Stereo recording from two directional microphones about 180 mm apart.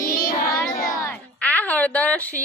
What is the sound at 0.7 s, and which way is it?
Speech, 50° left (ahead or behind).